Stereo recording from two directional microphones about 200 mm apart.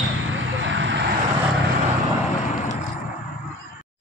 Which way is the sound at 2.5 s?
35° left (ahead or behind).